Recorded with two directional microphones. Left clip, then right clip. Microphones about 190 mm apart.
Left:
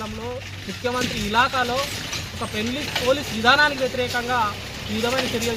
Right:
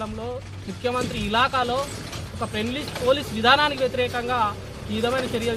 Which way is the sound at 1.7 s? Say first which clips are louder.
Left 2 dB; 55° right (ahead or behind).